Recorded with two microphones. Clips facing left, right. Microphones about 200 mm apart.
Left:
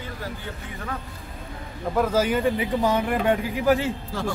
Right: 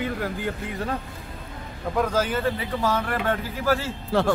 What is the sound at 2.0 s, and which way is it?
Speech, 10° left (ahead or behind).